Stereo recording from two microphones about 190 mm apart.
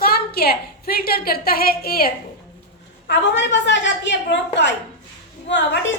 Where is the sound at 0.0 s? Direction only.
55° left (ahead or behind).